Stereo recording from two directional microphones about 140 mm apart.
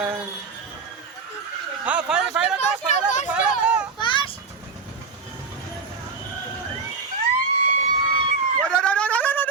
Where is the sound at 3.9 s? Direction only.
35° left (ahead or behind).